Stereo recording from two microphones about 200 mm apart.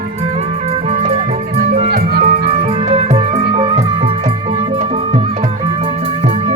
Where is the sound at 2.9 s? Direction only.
25° right (ahead or behind).